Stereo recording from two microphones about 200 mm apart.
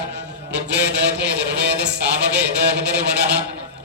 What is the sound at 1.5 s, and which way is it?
Music, 60° right (ahead or behind).